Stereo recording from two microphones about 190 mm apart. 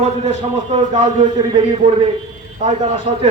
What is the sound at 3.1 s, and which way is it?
Speech, 35° right (ahead or behind).